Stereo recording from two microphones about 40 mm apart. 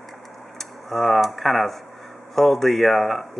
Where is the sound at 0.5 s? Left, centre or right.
Centre.